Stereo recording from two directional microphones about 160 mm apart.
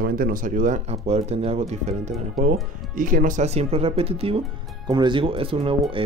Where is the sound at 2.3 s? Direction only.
60° right (ahead or behind).